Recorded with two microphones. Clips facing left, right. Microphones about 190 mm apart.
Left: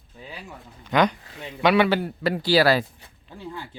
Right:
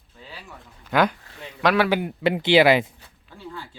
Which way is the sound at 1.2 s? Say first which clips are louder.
Left 2 dB; 20° left (ahead or behind).